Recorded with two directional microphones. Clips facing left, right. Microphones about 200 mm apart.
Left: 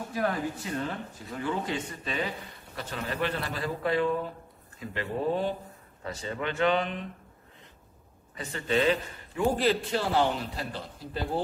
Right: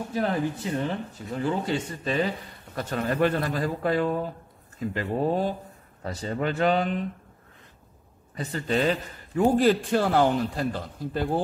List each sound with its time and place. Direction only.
0.1 s speech: 25° right (ahead or behind)
1.4 s a man's voice: 35° right (ahead or behind)
2.7 s a man's voice: 45° right (ahead or behind)
8.4 s a man's voice: 40° right (ahead or behind)
9.6 s a man's voice: 50° right (ahead or behind)